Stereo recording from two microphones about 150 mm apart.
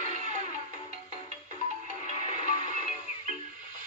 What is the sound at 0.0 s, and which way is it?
Music, 55° right (ahead or behind).